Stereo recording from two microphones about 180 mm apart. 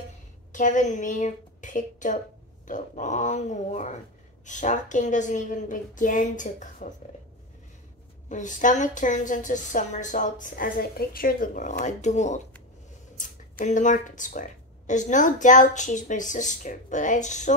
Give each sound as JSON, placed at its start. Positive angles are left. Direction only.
{"t": 0.5, "sound": "speech", "side_deg": 45}
{"t": 8.3, "sound": "speech", "side_deg": 45}